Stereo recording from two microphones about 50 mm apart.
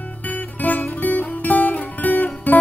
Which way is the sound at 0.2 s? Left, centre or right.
Left.